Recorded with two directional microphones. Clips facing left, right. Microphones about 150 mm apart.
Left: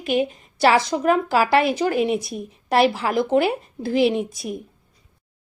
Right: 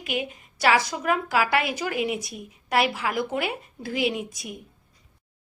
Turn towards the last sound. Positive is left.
turn(degrees=30)  # may be behind; listen again after turning